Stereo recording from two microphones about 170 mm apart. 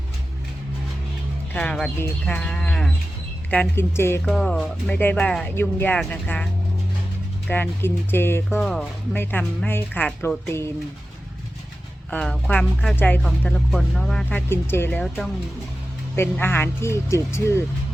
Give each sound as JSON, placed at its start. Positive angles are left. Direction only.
{"t": 1.5, "sound": "speech", "side_deg": 5}
{"t": 4.3, "sound": "speech", "side_deg": 5}
{"t": 12.1, "sound": "speech", "side_deg": 5}